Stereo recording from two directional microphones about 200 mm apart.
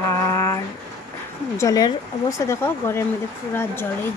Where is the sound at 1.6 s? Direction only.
15° left (ahead or behind).